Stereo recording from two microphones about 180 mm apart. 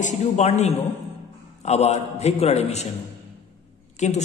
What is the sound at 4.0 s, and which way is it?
Speech, 40° left (ahead or behind).